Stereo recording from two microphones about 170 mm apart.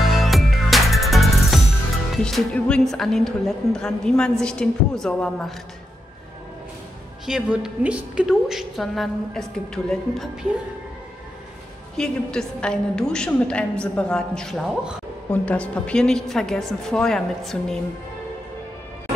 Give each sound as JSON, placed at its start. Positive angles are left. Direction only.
{"t": 0.0, "sound": "music", "side_deg": 0}
{"t": 2.2, "sound": "a woman's voice", "side_deg": 5}
{"t": 7.2, "sound": "a woman's voice", "side_deg": -5}
{"t": 12.0, "sound": "a woman's voice", "side_deg": 5}